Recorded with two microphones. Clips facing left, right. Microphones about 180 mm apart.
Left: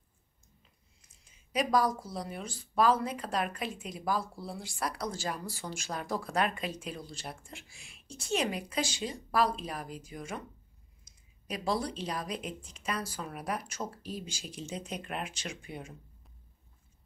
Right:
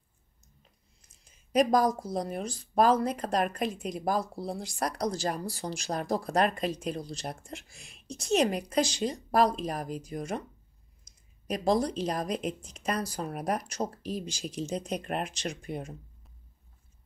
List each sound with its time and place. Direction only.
1.5 s speech: 45° right (ahead or behind)